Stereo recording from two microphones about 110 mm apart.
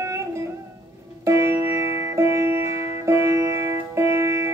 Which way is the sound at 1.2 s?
25° right (ahead or behind).